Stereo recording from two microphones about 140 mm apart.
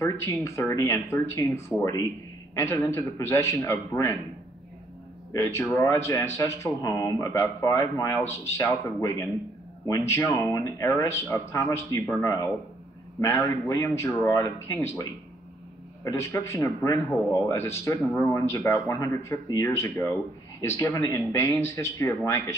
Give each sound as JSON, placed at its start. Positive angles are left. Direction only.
{"t": 0.0, "sound": "a man's voice", "side_deg": 20}
{"t": 5.3, "sound": "a man's voice", "side_deg": 20}
{"t": 16.0, "sound": "a man's voice", "side_deg": 20}